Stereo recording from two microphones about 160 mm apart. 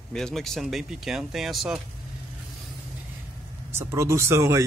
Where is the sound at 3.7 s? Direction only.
15° right (ahead or behind).